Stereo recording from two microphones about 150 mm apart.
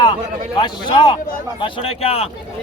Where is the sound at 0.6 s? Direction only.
30° left (ahead or behind).